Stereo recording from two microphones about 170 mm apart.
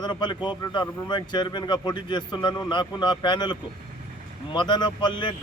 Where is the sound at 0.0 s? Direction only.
25° left (ahead or behind).